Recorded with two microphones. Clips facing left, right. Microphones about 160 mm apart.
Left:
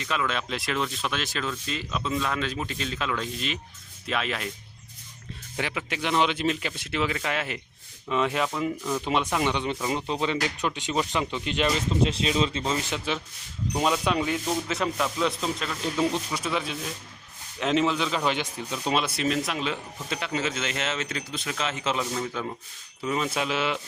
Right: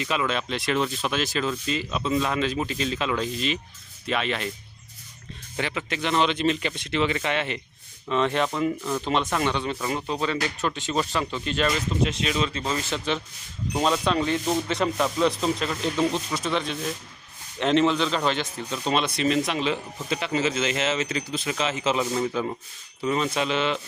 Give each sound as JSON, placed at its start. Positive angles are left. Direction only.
{"t": 0.0, "sound": "speech", "side_deg": -10}
{"t": 5.5, "sound": "speech", "side_deg": 10}
{"t": 12.0, "sound": "speech", "side_deg": 30}
{"t": 13.8, "sound": "speech", "side_deg": 10}
{"t": 23.0, "sound": "speech", "side_deg": 5}